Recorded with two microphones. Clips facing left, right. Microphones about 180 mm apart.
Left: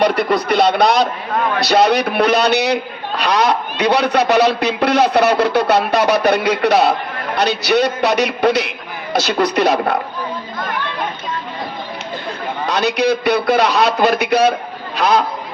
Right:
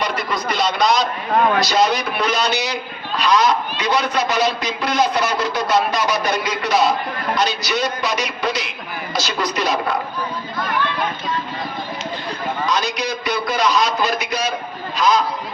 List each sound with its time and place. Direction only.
0.0 s a man's voice: 65° left (ahead or behind)
12.6 s a man's voice: 65° left (ahead or behind)